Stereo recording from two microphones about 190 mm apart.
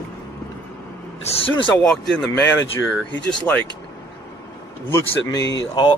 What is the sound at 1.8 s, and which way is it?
Speech, 5° left (ahead or behind).